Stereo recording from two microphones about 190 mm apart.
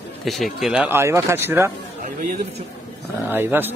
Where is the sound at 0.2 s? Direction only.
Centre (ahead or behind).